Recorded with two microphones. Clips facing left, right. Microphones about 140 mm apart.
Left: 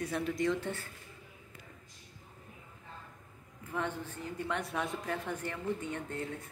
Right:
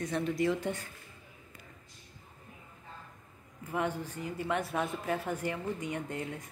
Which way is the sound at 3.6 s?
10° right (ahead or behind).